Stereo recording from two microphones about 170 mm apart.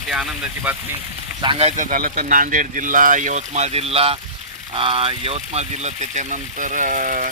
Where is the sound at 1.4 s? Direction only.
30° right (ahead or behind).